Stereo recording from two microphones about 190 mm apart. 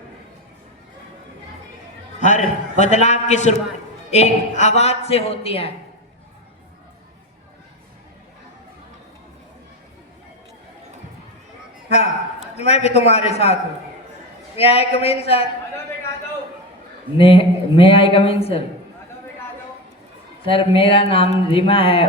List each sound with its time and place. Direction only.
2.2 s a man's voice: 40° left (ahead or behind)
12.5 s a man's voice: 35° left (ahead or behind)
17.2 s speech: 30° left (ahead or behind)
20.4 s speech: 30° left (ahead or behind)